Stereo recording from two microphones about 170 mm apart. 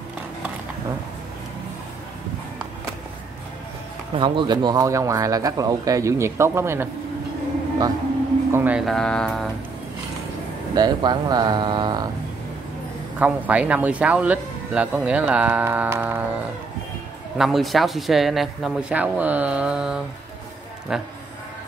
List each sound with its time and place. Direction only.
4.1 s speech: 30° right (ahead or behind)
8.5 s speech: 10° right (ahead or behind)
10.7 s speech: 25° right (ahead or behind)
13.2 s speech: 10° right (ahead or behind)
17.4 s speech: centre (ahead or behind)